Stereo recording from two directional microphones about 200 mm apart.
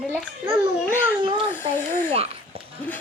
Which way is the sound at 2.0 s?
30° right (ahead or behind).